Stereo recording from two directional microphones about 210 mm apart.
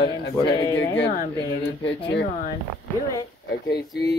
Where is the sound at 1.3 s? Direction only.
20° left (ahead or behind).